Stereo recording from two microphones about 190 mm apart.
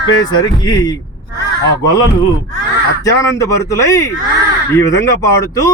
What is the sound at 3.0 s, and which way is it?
Speech, 15° left (ahead or behind).